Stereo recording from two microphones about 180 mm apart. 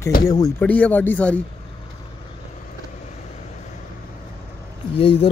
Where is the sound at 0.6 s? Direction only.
10° left (ahead or behind).